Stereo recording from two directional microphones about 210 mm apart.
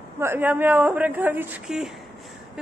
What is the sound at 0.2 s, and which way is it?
Speech, 10° right (ahead or behind).